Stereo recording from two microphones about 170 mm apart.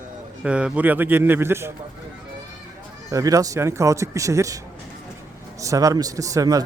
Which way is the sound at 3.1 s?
20° right (ahead or behind).